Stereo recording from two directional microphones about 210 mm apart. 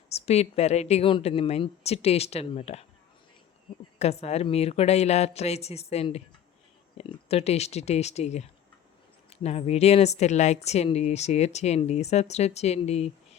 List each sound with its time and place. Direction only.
0.1 s speech: 30° left (ahead or behind)
3.9 s speech: 30° left (ahead or behind)